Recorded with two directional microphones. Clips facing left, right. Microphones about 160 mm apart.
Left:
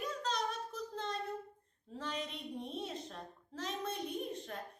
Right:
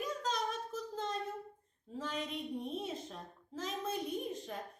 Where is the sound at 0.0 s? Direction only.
5° right (ahead or behind).